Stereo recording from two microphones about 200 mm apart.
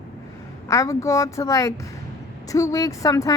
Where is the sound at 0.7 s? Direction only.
15° left (ahead or behind).